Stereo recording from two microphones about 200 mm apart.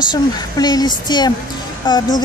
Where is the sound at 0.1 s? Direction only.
20° left (ahead or behind).